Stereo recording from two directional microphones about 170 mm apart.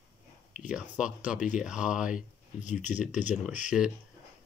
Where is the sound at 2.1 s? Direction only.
45° left (ahead or behind).